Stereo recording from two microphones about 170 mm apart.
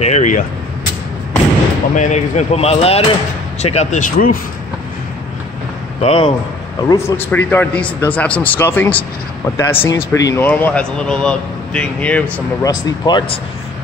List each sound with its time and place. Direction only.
0.0 s vehicle: 45° left (ahead or behind)
2.0 s speech: 45° left (ahead or behind)
6.0 s speech: 35° left (ahead or behind)
6.8 s speech: 20° left (ahead or behind)
12.6 s speech: 25° left (ahead or behind)